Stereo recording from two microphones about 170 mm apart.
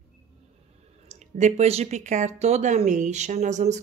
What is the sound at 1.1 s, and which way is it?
Speech, 45° right (ahead or behind).